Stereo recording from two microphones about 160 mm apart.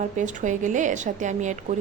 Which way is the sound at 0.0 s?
50° right (ahead or behind).